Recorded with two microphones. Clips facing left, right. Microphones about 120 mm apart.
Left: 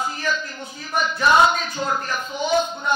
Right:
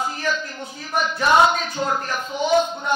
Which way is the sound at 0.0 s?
55° right (ahead or behind).